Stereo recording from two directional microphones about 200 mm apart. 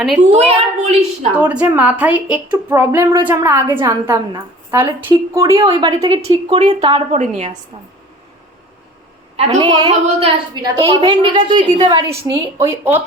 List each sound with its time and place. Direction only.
0.3 s a woman's voice: 30° right (ahead or behind)
1.4 s a woman's voice: 5° right (ahead or behind); by 7.5 s 35° right (ahead or behind)
9.3 s a sound: 35° right (ahead or behind)
9.6 s speech: 20° right (ahead or behind)
12.0 s a woman's voice: 15° right (ahead or behind)